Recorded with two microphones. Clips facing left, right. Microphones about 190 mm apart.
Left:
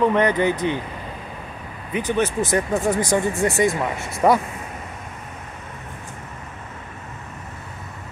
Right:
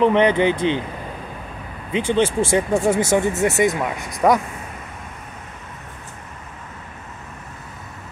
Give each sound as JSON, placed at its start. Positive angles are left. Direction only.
{"t": 0.0, "sound": "speech", "side_deg": -25}
{"t": 1.9, "sound": "speech", "side_deg": -25}
{"t": 4.2, "sound": "speech", "side_deg": -5}